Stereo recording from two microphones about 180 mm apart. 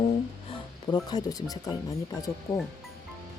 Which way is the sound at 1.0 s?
20° left (ahead or behind).